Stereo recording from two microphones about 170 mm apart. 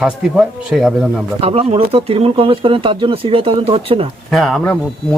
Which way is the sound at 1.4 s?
35° right (ahead or behind).